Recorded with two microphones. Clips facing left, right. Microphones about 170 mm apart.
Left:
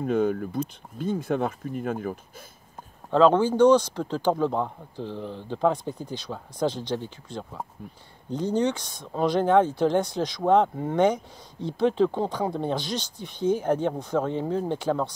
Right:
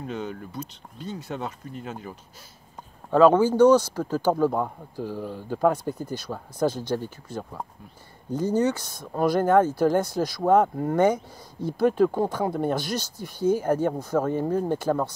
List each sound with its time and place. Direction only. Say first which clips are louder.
0.0 s speech: left 9 dB; 55° left (ahead or behind)
3.1 s speech: right 2 dB; 10° right (ahead or behind)
5.9 s speech: right 2 dB; 15° left (ahead or behind)
6.3 s speech: right 2 dB; 10° right (ahead or behind)
12.2 s speech: right 2 dB; 15° left (ahead or behind)
12.4 s speech: right 2 dB; 10° right (ahead or behind)